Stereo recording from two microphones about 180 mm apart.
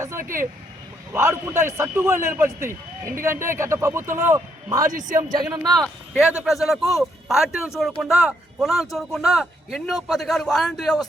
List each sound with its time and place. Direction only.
0.0 s vehicle: 15° right (ahead or behind)
1.1 s a man's voice: 15° right (ahead or behind)
5.8 s speech: 5° right (ahead or behind)